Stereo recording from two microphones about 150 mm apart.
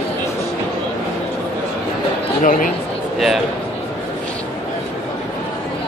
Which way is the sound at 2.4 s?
65° left (ahead or behind).